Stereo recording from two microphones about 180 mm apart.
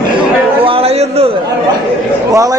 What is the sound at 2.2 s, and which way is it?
Speech, 20° right (ahead or behind).